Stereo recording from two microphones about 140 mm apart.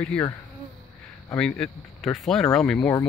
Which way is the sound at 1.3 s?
5° left (ahead or behind).